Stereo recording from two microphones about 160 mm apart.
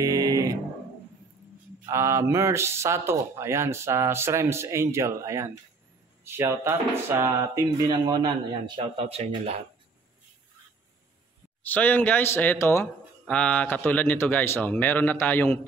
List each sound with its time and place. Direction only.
0.0 s music: 20° right (ahead or behind)
1.9 s speech: 15° right (ahead or behind); by 9.6 s 40° right (ahead or behind)
11.6 s a man's voice: 10° left (ahead or behind)